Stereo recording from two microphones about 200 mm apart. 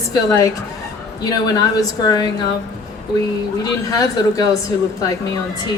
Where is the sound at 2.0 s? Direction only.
20° left (ahead or behind).